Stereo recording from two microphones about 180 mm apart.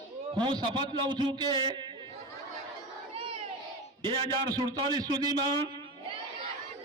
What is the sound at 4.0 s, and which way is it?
A man's voice, 35° right (ahead or behind).